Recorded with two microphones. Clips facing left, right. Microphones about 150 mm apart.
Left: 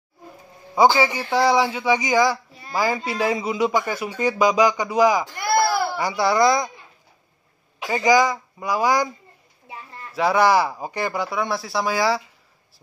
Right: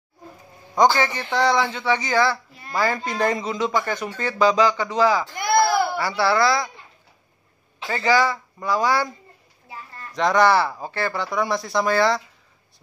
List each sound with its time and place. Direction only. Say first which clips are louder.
0.7 s speech: left 2 dB; 10° left (ahead or behind)
5.4 s goat: right 2 dB; 20° right (ahead or behind)
5.9 s speech: left 1 dB; 15° left (ahead or behind)
7.8 s speech: left 2 dB; 15° left (ahead or behind)
10.1 s speech: even; 10° left (ahead or behind)
11.2 s speech: right 1 dB; centre (ahead or behind)